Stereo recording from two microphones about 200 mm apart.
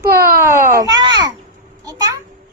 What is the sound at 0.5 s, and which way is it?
Speech, 15° right (ahead or behind).